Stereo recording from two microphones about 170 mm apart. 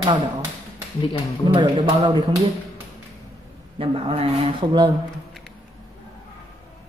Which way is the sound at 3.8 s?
35° right (ahead or behind).